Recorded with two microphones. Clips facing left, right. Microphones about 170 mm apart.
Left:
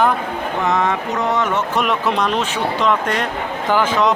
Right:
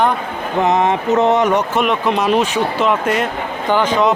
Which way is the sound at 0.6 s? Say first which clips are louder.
Right 5 dB; 20° right (ahead or behind).